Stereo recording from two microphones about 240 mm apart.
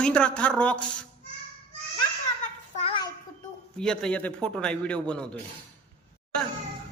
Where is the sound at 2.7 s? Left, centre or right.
Left.